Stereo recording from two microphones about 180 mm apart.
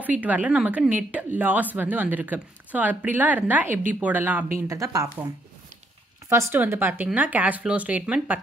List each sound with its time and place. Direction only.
0.0 s a woman's voice: 10° right (ahead or behind)
6.5 s a woman's voice: 10° right (ahead or behind)